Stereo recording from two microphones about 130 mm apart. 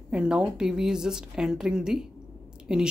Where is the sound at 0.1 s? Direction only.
5° right (ahead or behind).